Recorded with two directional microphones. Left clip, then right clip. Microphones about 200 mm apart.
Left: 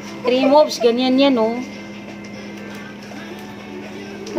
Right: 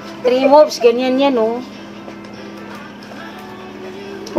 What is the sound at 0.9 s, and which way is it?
Speech, centre (ahead or behind).